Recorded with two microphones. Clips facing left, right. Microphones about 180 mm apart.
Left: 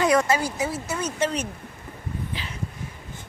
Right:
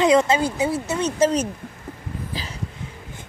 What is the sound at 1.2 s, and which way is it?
Speech, 40° right (ahead or behind).